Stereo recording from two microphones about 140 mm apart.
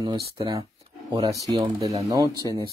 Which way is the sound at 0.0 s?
30° right (ahead or behind).